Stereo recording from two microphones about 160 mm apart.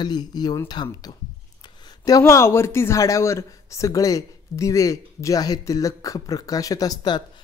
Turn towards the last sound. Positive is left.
turn(degrees=25)  # may be behind; listen again after turning